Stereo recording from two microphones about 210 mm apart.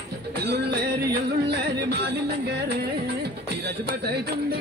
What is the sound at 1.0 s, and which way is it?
Music, 50° right (ahead or behind).